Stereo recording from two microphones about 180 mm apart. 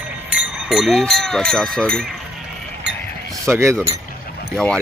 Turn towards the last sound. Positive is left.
turn(degrees=5)  # may be behind; listen again after turning